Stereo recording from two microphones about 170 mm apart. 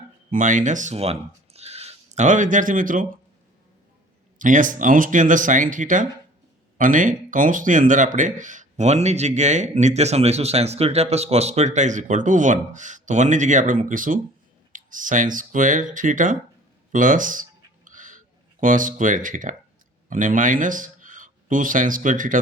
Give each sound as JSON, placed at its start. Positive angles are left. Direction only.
{"t": 0.3, "sound": "speech", "side_deg": -50}
{"t": 4.4, "sound": "speech", "side_deg": -50}
{"t": 17.8, "sound": "a sound", "side_deg": -50}
{"t": 18.6, "sound": "speech", "side_deg": -50}